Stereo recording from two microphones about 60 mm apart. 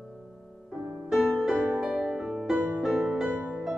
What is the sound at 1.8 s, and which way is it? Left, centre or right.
Music, centre.